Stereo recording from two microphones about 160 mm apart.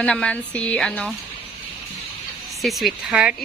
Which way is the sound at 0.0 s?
5° left (ahead or behind).